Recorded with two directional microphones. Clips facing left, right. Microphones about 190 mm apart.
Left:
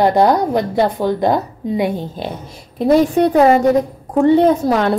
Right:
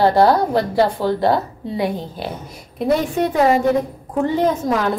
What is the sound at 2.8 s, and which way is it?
A woman's voice, 35° left (ahead or behind).